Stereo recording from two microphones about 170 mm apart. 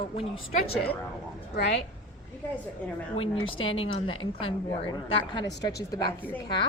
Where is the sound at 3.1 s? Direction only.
35° left (ahead or behind).